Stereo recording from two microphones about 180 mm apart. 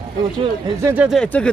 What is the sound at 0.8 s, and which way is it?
Speech, 15° right (ahead or behind).